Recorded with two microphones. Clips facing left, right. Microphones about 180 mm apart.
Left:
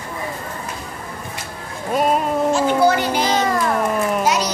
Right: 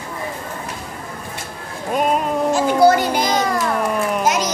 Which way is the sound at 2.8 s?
45° right (ahead or behind).